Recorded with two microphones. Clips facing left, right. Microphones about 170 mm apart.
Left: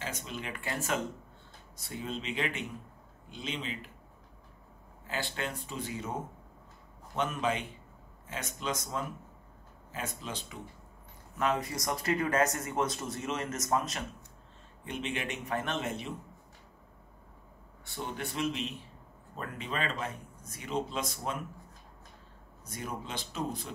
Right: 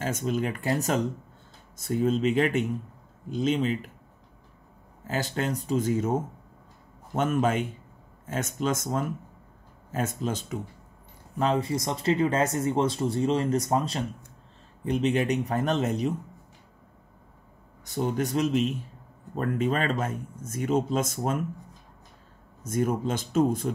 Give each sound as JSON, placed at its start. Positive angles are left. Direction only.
{"t": 0.0, "sound": "speech", "side_deg": -45}
{"t": 5.0, "sound": "speech", "side_deg": -40}
{"t": 11.3, "sound": "speech", "side_deg": -30}
{"t": 17.8, "sound": "speech", "side_deg": -40}
{"t": 22.6, "sound": "speech", "side_deg": -45}